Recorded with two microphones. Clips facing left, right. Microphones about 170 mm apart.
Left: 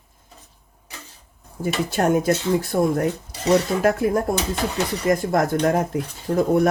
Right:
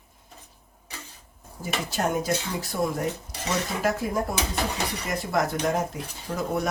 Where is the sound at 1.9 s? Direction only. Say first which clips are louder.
Left 6 dB; 60° left (ahead or behind).